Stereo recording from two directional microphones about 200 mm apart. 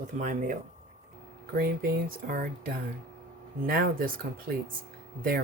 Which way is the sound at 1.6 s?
50° right (ahead or behind).